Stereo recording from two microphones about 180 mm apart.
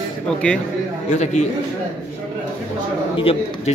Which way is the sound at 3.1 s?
30° left (ahead or behind).